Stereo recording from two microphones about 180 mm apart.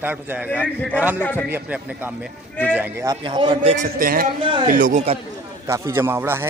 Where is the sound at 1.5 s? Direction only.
10° right (ahead or behind).